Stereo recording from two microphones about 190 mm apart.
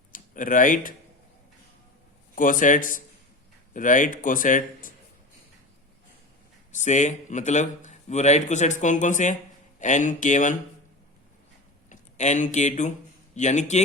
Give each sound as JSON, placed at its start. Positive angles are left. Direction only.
{"t": 0.1, "sound": "speech", "side_deg": 45}
{"t": 2.3, "sound": "speech", "side_deg": 45}
{"t": 6.7, "sound": "speech", "side_deg": 40}
{"t": 11.9, "sound": "speech", "side_deg": 40}